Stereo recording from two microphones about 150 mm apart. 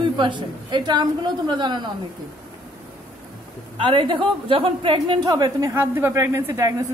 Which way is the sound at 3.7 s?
35° right (ahead or behind).